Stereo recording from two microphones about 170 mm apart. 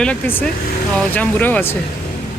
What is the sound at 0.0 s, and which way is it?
Speech, 10° left (ahead or behind).